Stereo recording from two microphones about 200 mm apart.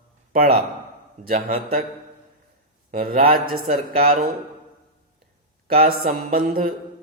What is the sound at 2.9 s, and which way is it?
Mantra, 45° right (ahead or behind).